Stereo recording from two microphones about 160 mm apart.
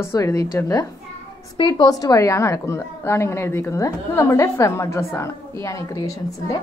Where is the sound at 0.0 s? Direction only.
20° left (ahead or behind).